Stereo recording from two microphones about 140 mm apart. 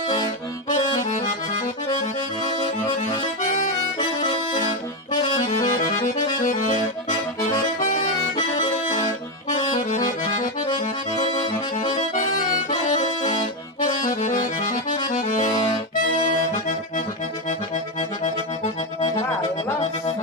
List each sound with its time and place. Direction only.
0.7 s accordion: 65° left (ahead or behind)
3.9 s accordion: 40° left (ahead or behind)
5.4 s accordion: 65° left (ahead or behind)
7.8 s accordion: 65° left (ahead or behind)
10.2 s accordion: 55° left (ahead or behind)
12.9 s accordion: 55° left (ahead or behind)
14.0 s accordion: 70° left (ahead or behind)
18.2 s accordion: 55° left (ahead or behind)